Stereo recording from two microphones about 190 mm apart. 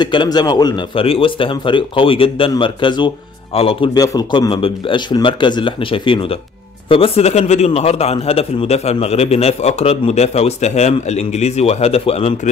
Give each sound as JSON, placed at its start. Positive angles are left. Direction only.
{"t": 0.0, "sound": "a man's voice", "side_deg": 25}